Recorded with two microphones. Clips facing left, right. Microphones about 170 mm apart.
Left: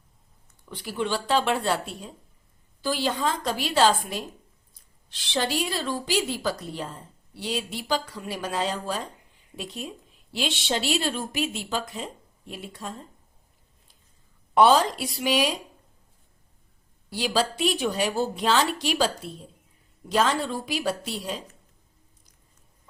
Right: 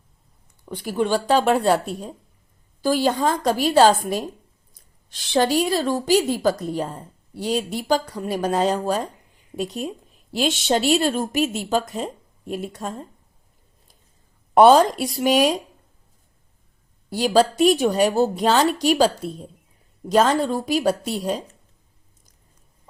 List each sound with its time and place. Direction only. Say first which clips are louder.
0.6 s a woman's voice: right 6 dB; 45° right (ahead or behind)
14.5 s a woman's voice: right 6 dB; 45° right (ahead or behind)
17.1 s a woman's voice: right 8 dB; 45° right (ahead or behind)